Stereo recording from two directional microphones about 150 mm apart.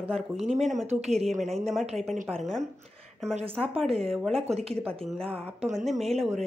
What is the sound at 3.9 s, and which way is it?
A woman's voice, centre (ahead or behind).